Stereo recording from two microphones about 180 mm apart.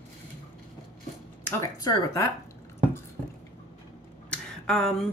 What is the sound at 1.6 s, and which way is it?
Speech, 20° left (ahead or behind).